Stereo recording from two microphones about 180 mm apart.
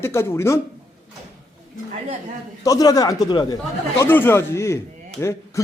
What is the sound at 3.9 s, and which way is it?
Speech, 10° left (ahead or behind).